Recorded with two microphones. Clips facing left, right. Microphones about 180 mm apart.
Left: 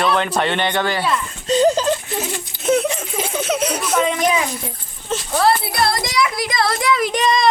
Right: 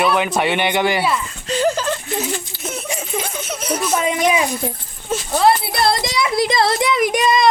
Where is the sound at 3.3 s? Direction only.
70° left (ahead or behind).